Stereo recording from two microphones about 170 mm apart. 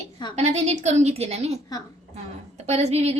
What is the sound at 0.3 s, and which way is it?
A woman's voice, 40° right (ahead or behind).